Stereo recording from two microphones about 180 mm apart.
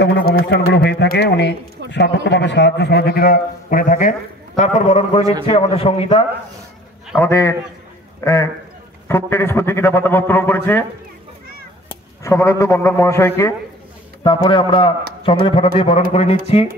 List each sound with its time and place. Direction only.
0.0 s a man's voice: 65° left (ahead or behind); by 6.2 s 30° left (ahead or behind)
7.2 s a man's voice: 15° left (ahead or behind)
12.2 s a man's voice: 15° left (ahead or behind)
14.2 s a man's voice: 25° left (ahead or behind)